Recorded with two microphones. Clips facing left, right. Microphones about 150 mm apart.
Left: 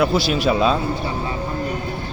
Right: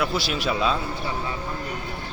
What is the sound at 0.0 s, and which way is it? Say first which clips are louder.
Speech: left 7 dB; 40° left (ahead or behind).